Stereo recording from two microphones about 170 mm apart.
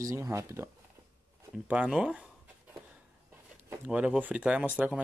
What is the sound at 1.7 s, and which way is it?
Speech, 5° right (ahead or behind).